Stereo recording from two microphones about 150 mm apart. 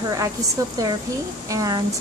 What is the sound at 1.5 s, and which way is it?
Speech, 25° right (ahead or behind).